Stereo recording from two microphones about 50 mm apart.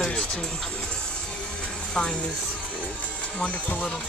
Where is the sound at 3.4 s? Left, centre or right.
Left.